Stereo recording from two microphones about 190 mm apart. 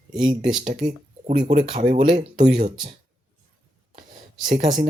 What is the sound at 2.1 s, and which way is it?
Speech, 25° right (ahead or behind).